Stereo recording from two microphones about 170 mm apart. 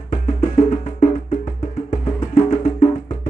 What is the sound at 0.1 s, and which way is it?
Music, 45° left (ahead or behind).